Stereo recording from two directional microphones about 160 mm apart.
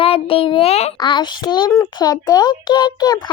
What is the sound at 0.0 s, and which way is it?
Child singing, 35° left (ahead or behind).